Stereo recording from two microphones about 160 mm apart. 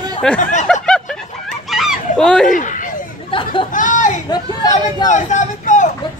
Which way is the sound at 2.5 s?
55° left (ahead or behind).